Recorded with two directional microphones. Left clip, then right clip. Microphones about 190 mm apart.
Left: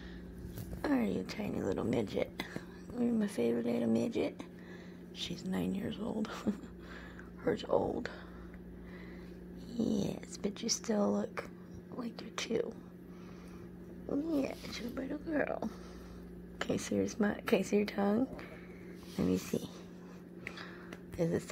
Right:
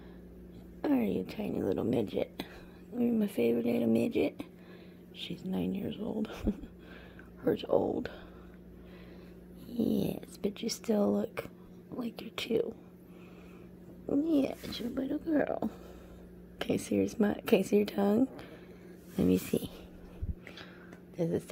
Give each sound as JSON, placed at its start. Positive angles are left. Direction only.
{"t": 0.8, "sound": "a woman's voice", "side_deg": -30}
{"t": 5.2, "sound": "speech", "side_deg": -25}
{"t": 9.7, "sound": "speech", "side_deg": -30}
{"t": 14.0, "sound": "speech", "side_deg": -35}
{"t": 21.2, "sound": "speech", "side_deg": -20}